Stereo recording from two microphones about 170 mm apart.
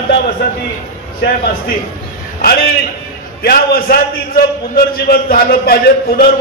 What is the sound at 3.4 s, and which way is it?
A man's voice, 65° left (ahead or behind).